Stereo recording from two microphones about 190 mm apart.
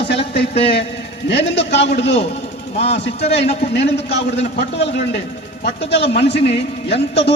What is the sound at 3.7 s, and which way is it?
Speech, 65° left (ahead or behind).